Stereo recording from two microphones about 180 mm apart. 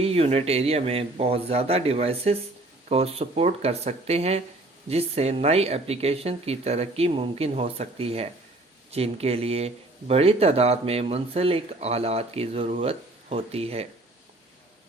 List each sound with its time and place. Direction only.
0.0 s speech: 35° right (ahead or behind)